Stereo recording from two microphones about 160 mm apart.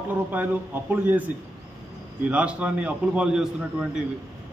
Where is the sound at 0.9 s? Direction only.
10° right (ahead or behind).